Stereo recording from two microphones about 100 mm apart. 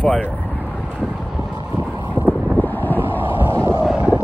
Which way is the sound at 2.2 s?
15° left (ahead or behind).